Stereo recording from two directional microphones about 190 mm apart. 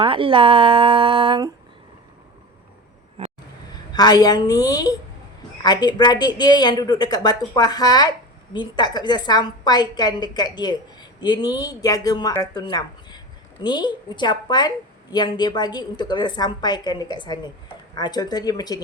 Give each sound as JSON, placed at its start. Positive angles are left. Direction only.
{"t": 0.0, "sound": "speech", "side_deg": -30}
{"t": 3.9, "sound": "speech", "side_deg": 20}